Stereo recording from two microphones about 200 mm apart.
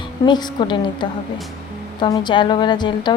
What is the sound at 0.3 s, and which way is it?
Speech, 20° left (ahead or behind).